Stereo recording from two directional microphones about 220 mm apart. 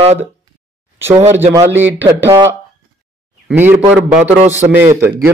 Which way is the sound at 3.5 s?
10° right (ahead or behind).